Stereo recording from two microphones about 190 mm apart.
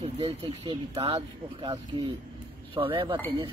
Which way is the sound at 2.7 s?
25° right (ahead or behind).